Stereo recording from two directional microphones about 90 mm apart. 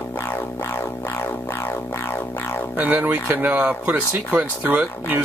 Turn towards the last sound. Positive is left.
turn(degrees=-20)  # may be behind; listen again after turning